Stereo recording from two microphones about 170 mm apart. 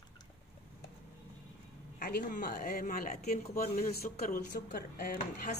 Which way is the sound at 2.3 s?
50° left (ahead or behind).